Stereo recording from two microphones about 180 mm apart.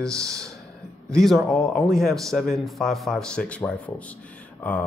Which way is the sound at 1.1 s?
Centre (ahead or behind).